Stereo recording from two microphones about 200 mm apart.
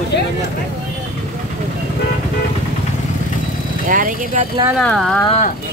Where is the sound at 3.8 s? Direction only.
45° right (ahead or behind).